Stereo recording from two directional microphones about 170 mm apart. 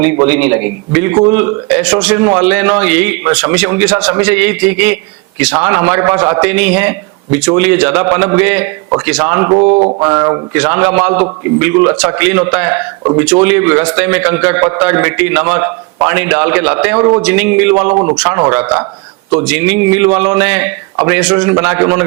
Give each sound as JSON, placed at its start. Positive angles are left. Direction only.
{"t": 0.0, "sound": "a man's voice", "side_deg": -10}
{"t": 9.6, "sound": "mantra", "side_deg": -35}
{"t": 10.0, "sound": "a man's voice", "side_deg": -20}
{"t": 17.0, "sound": "a man's voice", "side_deg": -30}
{"t": 17.2, "sound": "a man's voice", "side_deg": -10}
{"t": 17.9, "sound": "a man's voice", "side_deg": -25}